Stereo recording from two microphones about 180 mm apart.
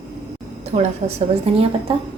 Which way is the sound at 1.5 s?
35° right (ahead or behind).